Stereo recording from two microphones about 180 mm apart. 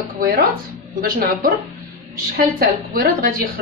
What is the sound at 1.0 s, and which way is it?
A woman's voice, 55° right (ahead or behind).